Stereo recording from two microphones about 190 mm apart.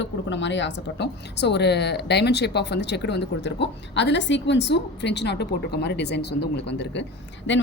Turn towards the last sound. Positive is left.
turn(degrees=70)  # may be behind; listen again after turning